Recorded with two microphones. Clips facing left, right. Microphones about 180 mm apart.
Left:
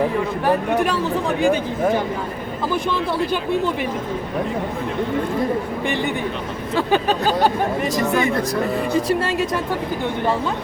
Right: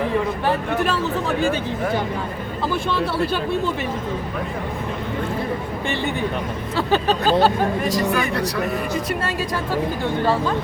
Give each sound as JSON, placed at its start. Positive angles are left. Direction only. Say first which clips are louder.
{"t": 6.7, "sound": "speech", "louder": "left 1 dB", "side_deg": 15}